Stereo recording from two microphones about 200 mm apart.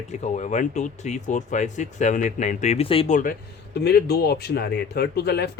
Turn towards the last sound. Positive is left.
turn(degrees=55)  # may be behind; listen again after turning